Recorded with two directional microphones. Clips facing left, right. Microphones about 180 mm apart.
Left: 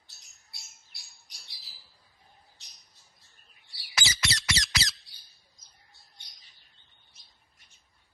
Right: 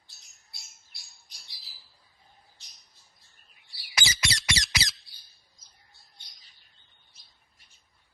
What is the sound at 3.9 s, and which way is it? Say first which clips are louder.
Squawk: right 1 dB; 15° right (ahead or behind).